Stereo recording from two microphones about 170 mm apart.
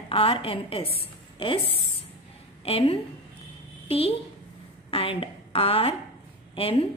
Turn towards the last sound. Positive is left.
turn(degrees=35)  # may be behind; listen again after turning